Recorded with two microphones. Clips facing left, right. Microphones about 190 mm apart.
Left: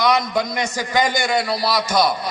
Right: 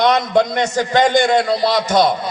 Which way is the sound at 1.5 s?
25° right (ahead or behind).